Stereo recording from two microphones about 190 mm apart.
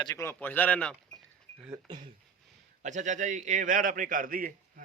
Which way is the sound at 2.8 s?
40° right (ahead or behind).